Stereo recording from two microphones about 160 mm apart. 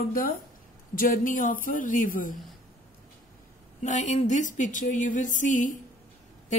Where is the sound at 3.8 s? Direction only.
50° left (ahead or behind).